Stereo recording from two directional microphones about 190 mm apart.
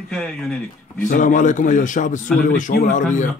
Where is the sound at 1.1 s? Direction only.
45° left (ahead or behind).